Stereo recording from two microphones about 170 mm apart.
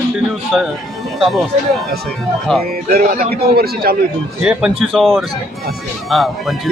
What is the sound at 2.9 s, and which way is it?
A man's voice, 55° right (ahead or behind).